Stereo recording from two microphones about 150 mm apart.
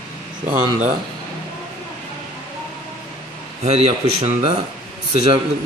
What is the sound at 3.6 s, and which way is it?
A man's voice, 45° right (ahead or behind).